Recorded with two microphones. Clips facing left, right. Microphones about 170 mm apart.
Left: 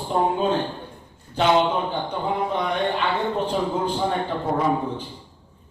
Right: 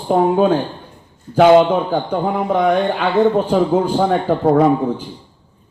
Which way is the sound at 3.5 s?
80° right.